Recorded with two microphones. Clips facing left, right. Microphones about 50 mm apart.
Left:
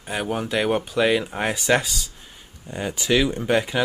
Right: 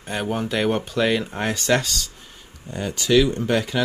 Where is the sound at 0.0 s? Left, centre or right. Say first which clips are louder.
Right 1 dB; centre.